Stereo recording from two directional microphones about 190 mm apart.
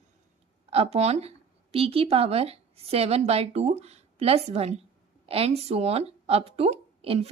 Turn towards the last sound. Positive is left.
turn(degrees=-30)  # may be behind; listen again after turning